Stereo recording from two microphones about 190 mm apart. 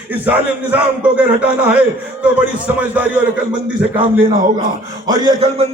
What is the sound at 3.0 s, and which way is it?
Speech, 10° right (ahead or behind).